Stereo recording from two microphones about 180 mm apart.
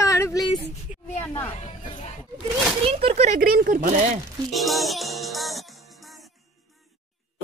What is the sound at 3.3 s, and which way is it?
Speech, 55° right (ahead or behind).